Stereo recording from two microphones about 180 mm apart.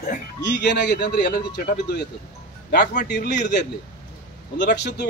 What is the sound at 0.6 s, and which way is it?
A man's voice, 65° left (ahead or behind).